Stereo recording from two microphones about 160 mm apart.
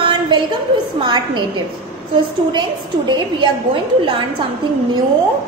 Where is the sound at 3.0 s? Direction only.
30° right (ahead or behind).